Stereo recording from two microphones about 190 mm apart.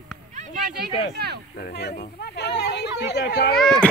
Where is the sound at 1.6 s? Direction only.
60° left (ahead or behind).